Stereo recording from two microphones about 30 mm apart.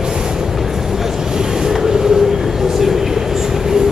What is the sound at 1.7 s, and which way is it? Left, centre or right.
Train, centre.